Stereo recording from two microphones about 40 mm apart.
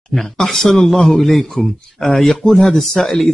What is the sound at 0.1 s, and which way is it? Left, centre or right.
Speech, centre.